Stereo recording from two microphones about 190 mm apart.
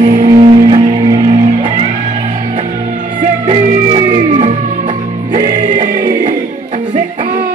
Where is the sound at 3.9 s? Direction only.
30° right (ahead or behind).